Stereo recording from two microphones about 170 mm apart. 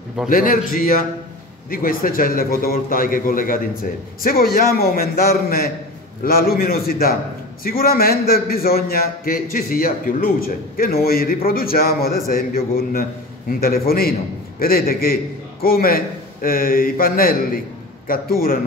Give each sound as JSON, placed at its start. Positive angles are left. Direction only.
{"t": 0.3, "sound": "a man's voice", "side_deg": 55}